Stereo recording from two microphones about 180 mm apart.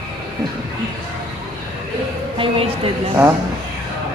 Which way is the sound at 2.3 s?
30° right (ahead or behind).